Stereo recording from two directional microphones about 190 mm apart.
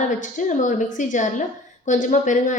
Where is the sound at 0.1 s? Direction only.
40° left (ahead or behind).